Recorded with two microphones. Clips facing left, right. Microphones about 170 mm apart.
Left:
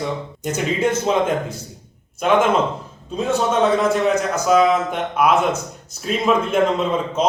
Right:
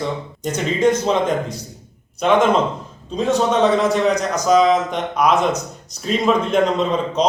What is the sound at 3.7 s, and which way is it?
A man's voice, centre (ahead or behind).